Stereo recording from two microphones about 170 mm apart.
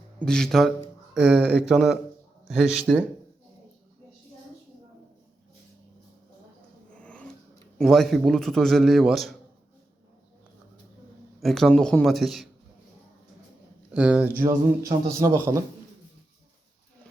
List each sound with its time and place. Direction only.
0.2 s a man's voice: 5° left (ahead or behind)
6.9 s a sound: 5° left (ahead or behind)
7.8 s a man's voice: centre (ahead or behind)
11.3 s a man's voice: centre (ahead or behind)
13.9 s speech: 5° right (ahead or behind)
14.4 s a man's voice: 20° right (ahead or behind)